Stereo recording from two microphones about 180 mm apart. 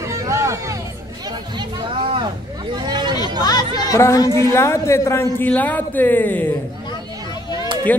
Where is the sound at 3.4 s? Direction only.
20° left (ahead or behind).